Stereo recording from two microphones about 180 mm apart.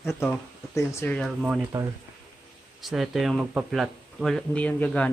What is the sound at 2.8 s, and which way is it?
Speech, centre (ahead or behind).